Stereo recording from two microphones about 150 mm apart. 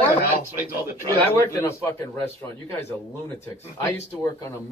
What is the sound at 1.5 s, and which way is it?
Speech, 15° left (ahead or behind).